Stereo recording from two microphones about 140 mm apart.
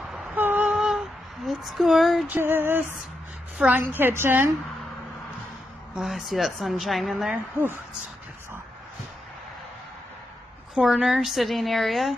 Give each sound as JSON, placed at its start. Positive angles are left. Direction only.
{"t": 0.1, "sound": "female singing", "side_deg": -10}
{"t": 2.2, "sound": "female singing", "side_deg": -15}
{"t": 5.9, "sound": "a woman's voice", "side_deg": 0}
{"t": 10.7, "sound": "a woman's voice", "side_deg": -5}